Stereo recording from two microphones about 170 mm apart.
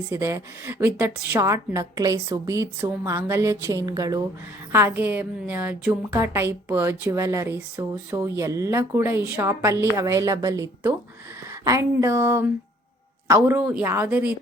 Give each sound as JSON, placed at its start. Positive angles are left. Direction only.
{"t": 0.1, "sound": "a woman's voice", "side_deg": -15}